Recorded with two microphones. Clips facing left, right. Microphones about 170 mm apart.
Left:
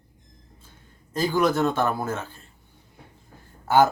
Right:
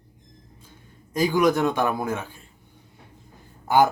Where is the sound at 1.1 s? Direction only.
15° right (ahead or behind).